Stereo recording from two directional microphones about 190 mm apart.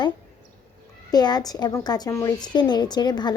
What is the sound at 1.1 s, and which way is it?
A woman's voice, 20° left (ahead or behind).